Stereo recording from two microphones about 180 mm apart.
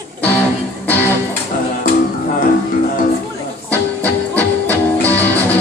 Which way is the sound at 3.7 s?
10° left (ahead or behind).